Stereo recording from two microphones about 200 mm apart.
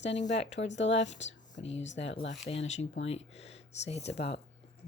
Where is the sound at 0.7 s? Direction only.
65° left (ahead or behind).